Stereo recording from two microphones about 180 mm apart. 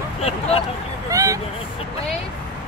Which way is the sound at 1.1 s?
20° right (ahead or behind).